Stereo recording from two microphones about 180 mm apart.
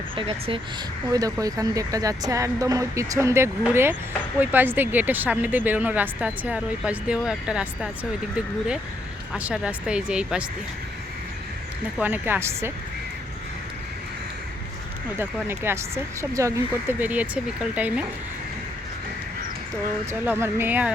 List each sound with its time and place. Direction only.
0.2 s speech: 30° right (ahead or behind); by 10.4 s 5° right (ahead or behind)
11.9 s speech: 10° right (ahead or behind)
15.2 s speech: 15° right (ahead or behind)
20.1 s speech: 15° right (ahead or behind)